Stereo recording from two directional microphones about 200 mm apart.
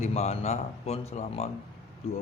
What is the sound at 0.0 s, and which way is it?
Speech, 35° left (ahead or behind).